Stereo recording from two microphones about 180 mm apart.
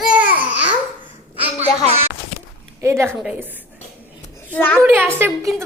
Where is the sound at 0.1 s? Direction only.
10° right (ahead or behind).